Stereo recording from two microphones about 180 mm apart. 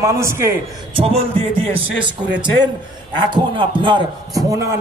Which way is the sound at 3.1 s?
25° right (ahead or behind).